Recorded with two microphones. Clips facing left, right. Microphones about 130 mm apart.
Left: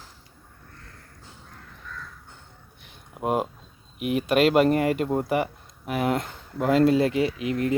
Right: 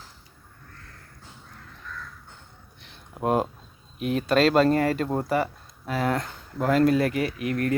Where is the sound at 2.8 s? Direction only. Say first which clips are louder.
Right 2 dB; 10° left (ahead or behind).